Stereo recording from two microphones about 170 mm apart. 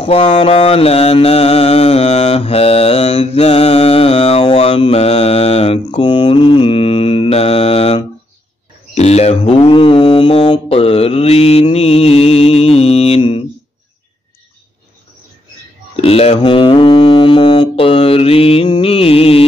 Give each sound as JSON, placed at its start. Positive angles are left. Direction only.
{"t": 0.0, "sound": "mantra", "side_deg": 35}
{"t": 16.0, "sound": "mantra", "side_deg": 35}